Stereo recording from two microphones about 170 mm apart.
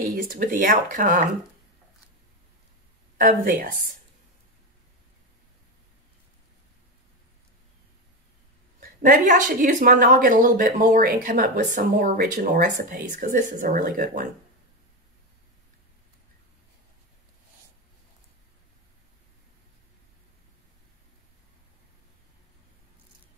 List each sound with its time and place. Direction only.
0.1 s a woman's voice: 55° right (ahead or behind)
3.2 s a woman's voice: 55° right (ahead or behind)
8.7 s a woman's voice: 55° right (ahead or behind)